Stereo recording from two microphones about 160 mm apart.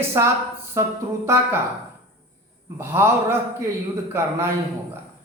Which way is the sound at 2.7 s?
15° right (ahead or behind).